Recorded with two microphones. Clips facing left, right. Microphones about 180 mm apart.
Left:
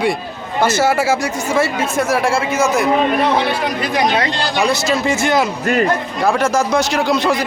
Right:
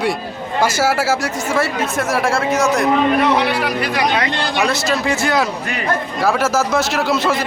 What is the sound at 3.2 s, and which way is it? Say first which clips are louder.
Speech: even; 30° left (ahead or behind).